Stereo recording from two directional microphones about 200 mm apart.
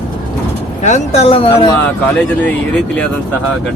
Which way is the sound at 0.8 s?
35° left (ahead or behind).